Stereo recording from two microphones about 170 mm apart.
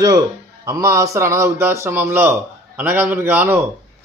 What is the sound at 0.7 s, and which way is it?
A man's voice, 20° right (ahead or behind).